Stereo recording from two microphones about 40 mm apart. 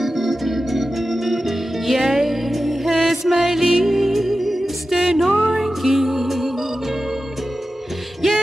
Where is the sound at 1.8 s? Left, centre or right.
Centre.